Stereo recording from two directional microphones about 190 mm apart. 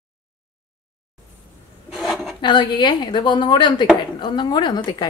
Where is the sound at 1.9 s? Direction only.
Centre (ahead or behind).